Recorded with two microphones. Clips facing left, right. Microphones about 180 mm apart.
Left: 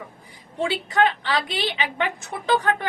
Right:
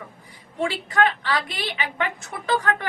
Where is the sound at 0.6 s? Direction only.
20° left (ahead or behind).